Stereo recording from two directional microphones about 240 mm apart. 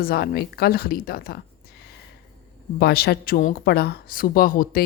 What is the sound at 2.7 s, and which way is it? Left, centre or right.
A woman's voice, left.